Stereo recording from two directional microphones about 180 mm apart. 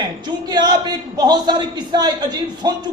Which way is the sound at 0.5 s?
25° right (ahead or behind).